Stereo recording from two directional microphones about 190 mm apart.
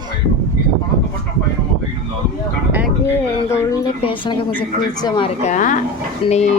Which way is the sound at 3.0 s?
15° left (ahead or behind).